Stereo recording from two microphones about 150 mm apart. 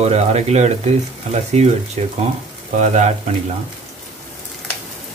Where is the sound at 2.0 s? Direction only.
45° right (ahead or behind).